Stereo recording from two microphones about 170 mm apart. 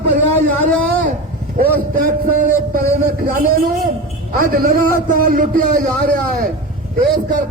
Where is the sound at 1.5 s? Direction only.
55° right (ahead or behind).